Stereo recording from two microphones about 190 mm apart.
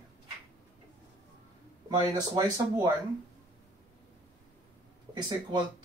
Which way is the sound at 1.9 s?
20° right (ahead or behind).